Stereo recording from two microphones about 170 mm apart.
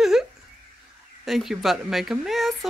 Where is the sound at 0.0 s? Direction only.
Centre (ahead or behind).